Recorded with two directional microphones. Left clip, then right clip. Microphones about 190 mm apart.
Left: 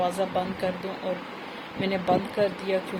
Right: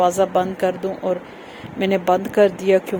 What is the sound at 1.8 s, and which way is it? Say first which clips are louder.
Speech: right 7 dB; 55° right (ahead or behind).